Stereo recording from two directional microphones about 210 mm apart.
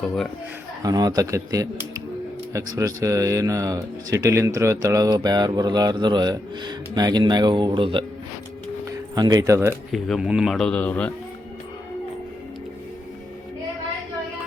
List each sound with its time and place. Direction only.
0.0 s a man's voice: centre (ahead or behind)
0.8 s speech: 20° right (ahead or behind)
9.9 s a man's voice: centre (ahead or behind)